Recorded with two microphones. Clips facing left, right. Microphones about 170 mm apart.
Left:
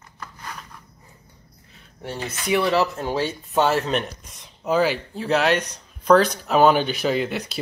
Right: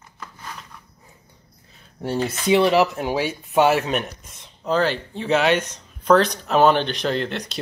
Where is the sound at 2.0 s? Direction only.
40° right (ahead or behind).